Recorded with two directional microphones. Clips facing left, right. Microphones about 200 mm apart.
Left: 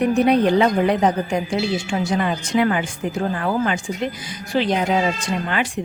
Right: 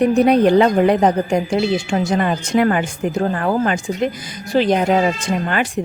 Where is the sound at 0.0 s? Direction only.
40° right (ahead or behind).